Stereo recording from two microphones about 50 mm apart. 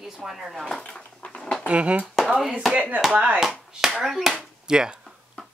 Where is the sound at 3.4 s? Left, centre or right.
Centre.